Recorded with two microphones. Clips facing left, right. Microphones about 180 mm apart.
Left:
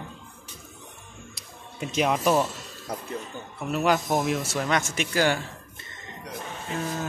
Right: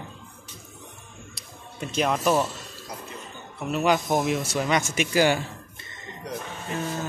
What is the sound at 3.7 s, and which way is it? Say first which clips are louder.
Speech: right 1 dB; centre (ahead or behind).